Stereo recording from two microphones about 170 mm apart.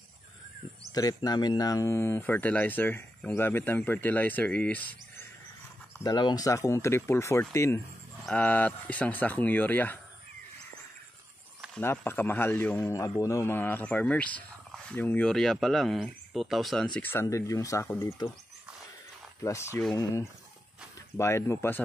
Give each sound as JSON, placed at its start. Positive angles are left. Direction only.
{"t": 0.9, "sound": "a man's voice", "side_deg": 20}
{"t": 6.0, "sound": "a man's voice", "side_deg": 25}
{"t": 11.7, "sound": "a man's voice", "side_deg": 15}
{"t": 19.4, "sound": "a man's voice", "side_deg": 15}
{"t": 21.2, "sound": "a man's voice", "side_deg": 15}